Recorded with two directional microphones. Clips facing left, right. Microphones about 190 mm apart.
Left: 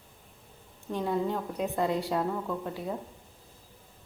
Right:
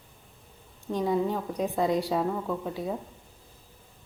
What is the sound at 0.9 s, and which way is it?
A woman's voice, 15° right (ahead or behind).